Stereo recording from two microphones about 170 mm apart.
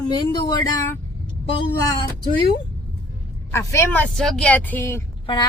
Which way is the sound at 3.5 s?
15° left (ahead or behind).